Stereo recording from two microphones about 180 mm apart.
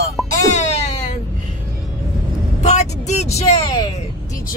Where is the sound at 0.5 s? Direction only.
40° left (ahead or behind).